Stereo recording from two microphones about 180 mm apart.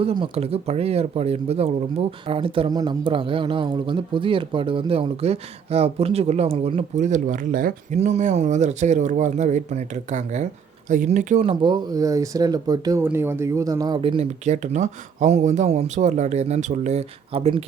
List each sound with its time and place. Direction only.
0.0 s speech: 30° right (ahead or behind)
11.6 s speech: 25° right (ahead or behind)